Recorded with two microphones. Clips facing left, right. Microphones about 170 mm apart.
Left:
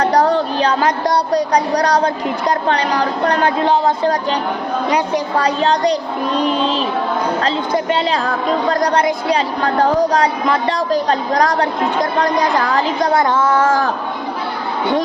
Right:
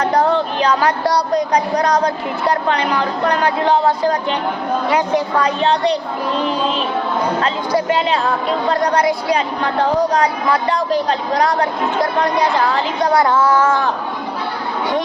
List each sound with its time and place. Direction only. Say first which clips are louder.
0.0 s a sound: left 1 dB; 35° left (ahead or behind)
1.3 s a woman's voice: left 1 dB; 35° left (ahead or behind)
5.4 s a woman's voice: left 4 dB; 35° left (ahead or behind)
6.3 s speech: left 3 dB; 15° left (ahead or behind)
7.9 s a woman's voice: even; 35° left (ahead or behind)
13.1 s a sound: right 2 dB; 20° left (ahead or behind)
13.6 s a woman's voice: left 1 dB; 40° left (ahead or behind)